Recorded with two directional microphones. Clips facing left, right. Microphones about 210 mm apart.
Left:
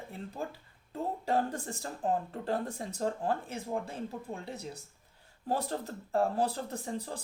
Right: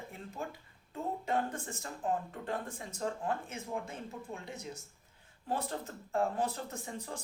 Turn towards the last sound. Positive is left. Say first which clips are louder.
# left 5 dB
turn(degrees=35)  # may be behind; listen again after turning